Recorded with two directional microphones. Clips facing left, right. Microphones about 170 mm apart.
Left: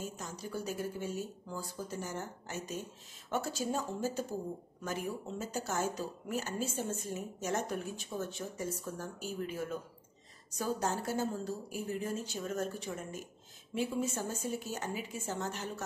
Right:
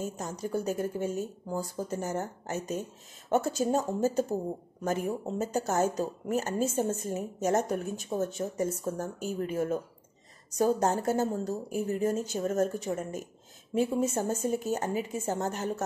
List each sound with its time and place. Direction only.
0.0 s a woman's voice: 45° right (ahead or behind)
5.5 s a woman's voice: 45° right (ahead or behind)